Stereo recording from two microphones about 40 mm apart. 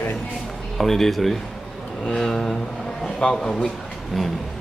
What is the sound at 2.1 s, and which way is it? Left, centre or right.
A woman's voice, centre.